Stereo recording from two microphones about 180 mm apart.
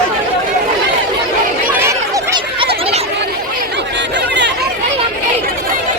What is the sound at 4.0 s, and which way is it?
Chatter, 75° right (ahead or behind).